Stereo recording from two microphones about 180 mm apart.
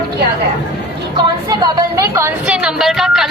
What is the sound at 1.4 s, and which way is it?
A woman's voice, 20° right (ahead or behind).